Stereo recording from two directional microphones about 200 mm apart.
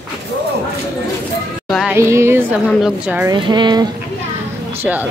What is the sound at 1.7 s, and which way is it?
Music, centre (ahead or behind).